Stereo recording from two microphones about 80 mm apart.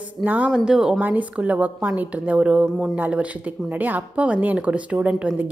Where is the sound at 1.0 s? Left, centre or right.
Right.